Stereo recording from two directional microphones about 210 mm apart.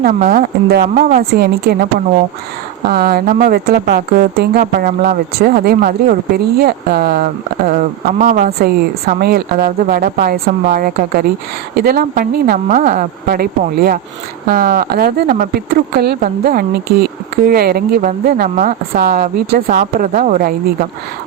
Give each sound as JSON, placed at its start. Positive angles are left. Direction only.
{"t": 0.0, "sound": "speech", "side_deg": -40}